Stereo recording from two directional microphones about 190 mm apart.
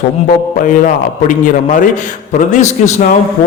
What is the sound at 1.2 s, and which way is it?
Speech, 40° left (ahead or behind).